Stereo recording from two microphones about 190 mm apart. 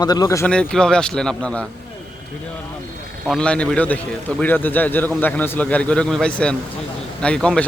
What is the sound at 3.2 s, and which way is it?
A man's voice, 5° left (ahead or behind).